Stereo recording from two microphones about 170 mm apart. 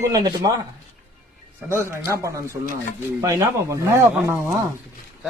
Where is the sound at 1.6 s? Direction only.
15° right (ahead or behind).